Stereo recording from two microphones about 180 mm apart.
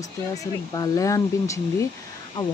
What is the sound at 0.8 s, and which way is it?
Speech, 20° left (ahead or behind).